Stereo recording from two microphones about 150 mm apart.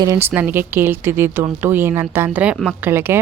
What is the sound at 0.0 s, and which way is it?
A woman's voice, 20° right (ahead or behind).